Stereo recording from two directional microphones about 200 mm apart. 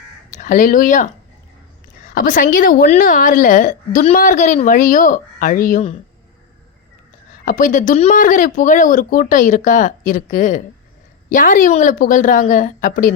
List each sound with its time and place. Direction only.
0.3 s speech: 40° left (ahead or behind)
2.1 s a woman's voice: 40° left (ahead or behind)
7.4 s a woman's voice: 40° left (ahead or behind)